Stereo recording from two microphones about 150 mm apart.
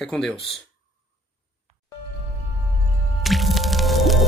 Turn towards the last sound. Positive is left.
turn(degrees=0)  # may be behind; listen again after turning